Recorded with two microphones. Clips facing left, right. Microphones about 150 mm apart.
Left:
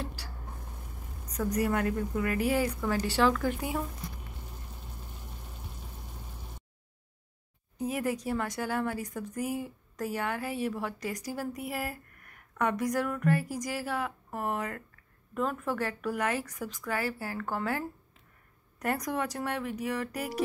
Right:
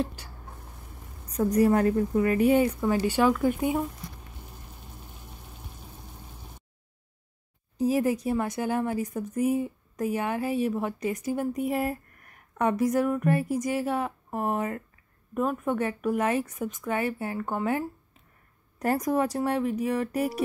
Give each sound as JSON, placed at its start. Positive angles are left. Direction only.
{"t": 1.3, "sound": "speech", "side_deg": -30}
{"t": 7.7, "sound": "speech", "side_deg": -25}